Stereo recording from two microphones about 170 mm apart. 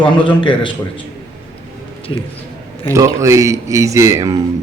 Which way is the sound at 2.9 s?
15° right (ahead or behind).